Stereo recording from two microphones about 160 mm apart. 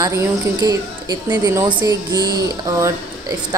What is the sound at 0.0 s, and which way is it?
A woman's voice, 20° right (ahead or behind).